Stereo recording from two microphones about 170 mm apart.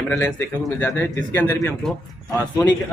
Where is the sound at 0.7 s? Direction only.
10° left (ahead or behind).